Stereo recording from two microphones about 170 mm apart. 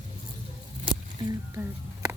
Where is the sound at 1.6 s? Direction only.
15° right (ahead or behind).